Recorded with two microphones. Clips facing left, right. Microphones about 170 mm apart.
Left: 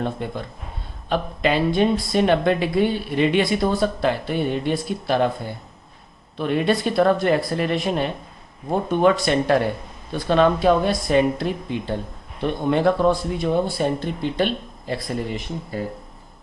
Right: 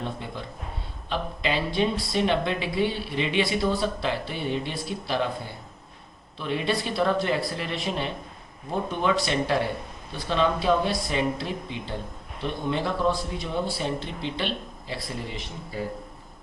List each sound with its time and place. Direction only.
0.0 s speech: 55° left (ahead or behind)
6.3 s speech: 55° left (ahead or behind)